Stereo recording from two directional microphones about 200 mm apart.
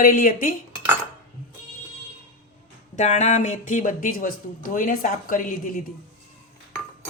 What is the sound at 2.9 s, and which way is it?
Speech, 35° left (ahead or behind).